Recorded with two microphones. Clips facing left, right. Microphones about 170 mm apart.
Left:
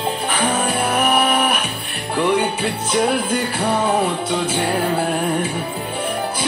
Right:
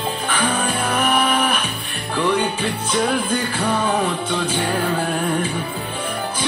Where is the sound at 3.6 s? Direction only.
25° left (ahead or behind).